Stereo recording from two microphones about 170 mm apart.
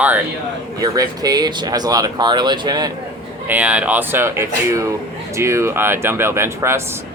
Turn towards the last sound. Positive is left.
turn(degrees=-15)  # may be behind; listen again after turning